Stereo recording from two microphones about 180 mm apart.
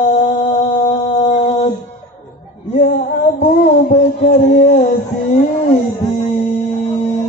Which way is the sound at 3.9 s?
40° left (ahead or behind).